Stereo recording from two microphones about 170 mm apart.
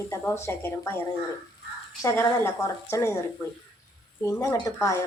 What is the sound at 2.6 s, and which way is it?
Speech, 15° left (ahead or behind).